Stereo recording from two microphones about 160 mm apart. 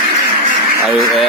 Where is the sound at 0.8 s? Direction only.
Centre (ahead or behind).